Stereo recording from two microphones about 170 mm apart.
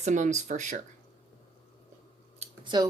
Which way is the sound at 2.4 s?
25° right (ahead or behind).